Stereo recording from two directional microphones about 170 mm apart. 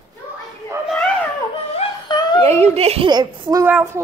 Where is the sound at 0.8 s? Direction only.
5° left (ahead or behind).